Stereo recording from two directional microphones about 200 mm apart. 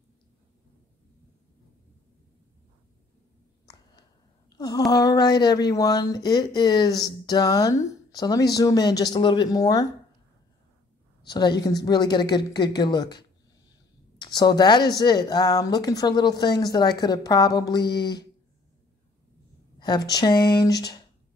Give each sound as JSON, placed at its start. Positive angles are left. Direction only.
{"t": 3.6, "sound": "a sound", "side_deg": 20}
{"t": 4.9, "sound": "speech", "side_deg": 20}
{"t": 11.2, "sound": "speech", "side_deg": 20}
{"t": 19.8, "sound": "speech", "side_deg": 20}